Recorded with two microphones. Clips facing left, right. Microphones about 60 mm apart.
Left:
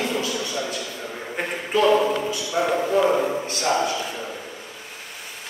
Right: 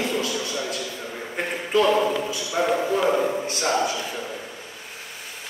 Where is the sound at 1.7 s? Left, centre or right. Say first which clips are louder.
Left 1 dB; centre.